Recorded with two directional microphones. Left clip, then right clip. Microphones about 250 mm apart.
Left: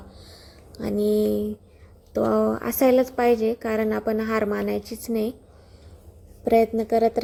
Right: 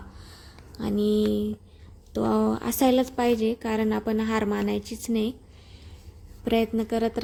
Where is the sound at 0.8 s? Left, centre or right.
Right.